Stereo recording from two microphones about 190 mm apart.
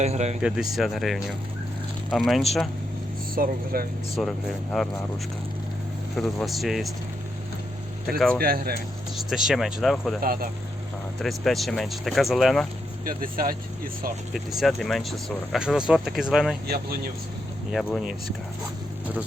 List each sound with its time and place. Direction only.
0.0 s speech: 35° right (ahead or behind)
0.4 s speech: 5° right (ahead or behind)
3.3 s speech: 50° right (ahead or behind)
4.2 s speech: centre (ahead or behind)
6.1 s speech: centre (ahead or behind)
8.4 s speech: 55° right (ahead or behind)
9.1 s speech: 5° right (ahead or behind)
10.2 s speech: 50° right (ahead or behind)
11.2 s speech: centre (ahead or behind)
13.1 s speech: 50° right (ahead or behind)
14.3 s speech: centre (ahead or behind)
16.6 s speech: 55° right (ahead or behind)